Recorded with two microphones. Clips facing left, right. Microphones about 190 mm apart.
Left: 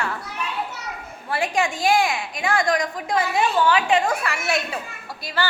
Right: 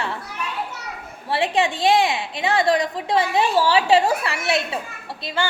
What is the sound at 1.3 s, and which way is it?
A woman's voice, 25° right (ahead or behind).